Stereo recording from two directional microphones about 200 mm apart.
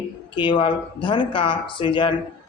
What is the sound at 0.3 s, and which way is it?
A man's voice, 25° left (ahead or behind).